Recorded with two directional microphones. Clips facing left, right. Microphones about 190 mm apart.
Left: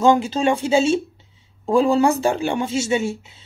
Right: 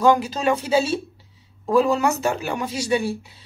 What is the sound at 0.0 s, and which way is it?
Speech, 25° left (ahead or behind).